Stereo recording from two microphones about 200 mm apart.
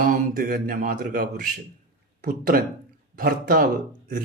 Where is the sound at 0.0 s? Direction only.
45° right (ahead or behind).